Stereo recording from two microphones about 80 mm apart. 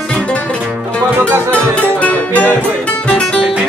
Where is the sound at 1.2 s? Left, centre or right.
Right.